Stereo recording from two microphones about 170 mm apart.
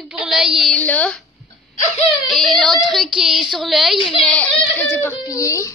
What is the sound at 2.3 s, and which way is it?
A child's voice, centre (ahead or behind).